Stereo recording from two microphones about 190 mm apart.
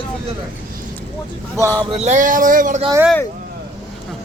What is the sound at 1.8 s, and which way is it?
Speech, 35° right (ahead or behind).